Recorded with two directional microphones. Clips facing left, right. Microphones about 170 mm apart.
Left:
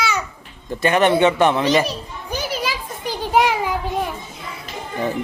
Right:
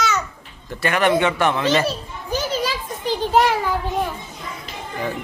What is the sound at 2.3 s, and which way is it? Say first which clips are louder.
Children playing: right 2 dB; 10° left (ahead or behind).